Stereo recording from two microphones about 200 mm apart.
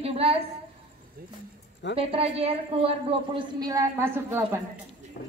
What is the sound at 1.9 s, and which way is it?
A woman's voice, 30° right (ahead or behind).